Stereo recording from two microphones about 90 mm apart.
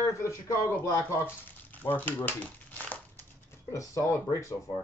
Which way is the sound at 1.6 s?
20° left (ahead or behind).